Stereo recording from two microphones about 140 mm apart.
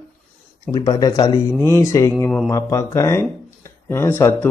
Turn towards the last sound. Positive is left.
turn(degrees=15)  # may be behind; listen again after turning